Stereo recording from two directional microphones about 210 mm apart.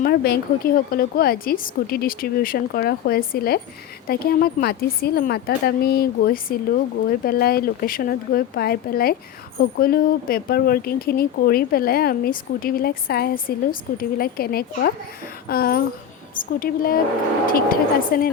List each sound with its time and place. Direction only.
0.0 s speech: 45° left (ahead or behind)